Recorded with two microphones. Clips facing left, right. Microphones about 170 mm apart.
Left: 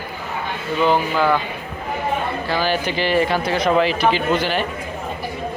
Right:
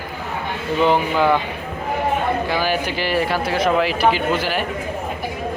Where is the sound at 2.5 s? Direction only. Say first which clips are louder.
Even; 10° right (ahead or behind).